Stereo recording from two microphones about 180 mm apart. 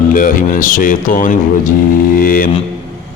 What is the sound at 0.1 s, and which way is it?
Mantra, 50° left (ahead or behind).